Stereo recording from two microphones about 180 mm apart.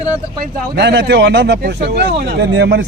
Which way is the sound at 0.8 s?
70° right (ahead or behind).